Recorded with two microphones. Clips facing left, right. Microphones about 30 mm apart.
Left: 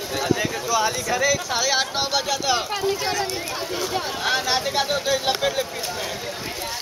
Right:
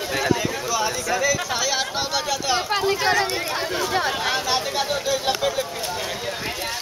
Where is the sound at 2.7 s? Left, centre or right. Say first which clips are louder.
Right 4 dB; right.